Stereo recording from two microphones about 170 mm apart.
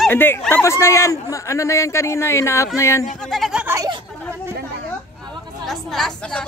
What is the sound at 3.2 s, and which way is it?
Speech, centre (ahead or behind).